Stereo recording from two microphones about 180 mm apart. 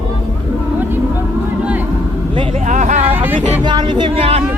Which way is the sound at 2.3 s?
30° right (ahead or behind).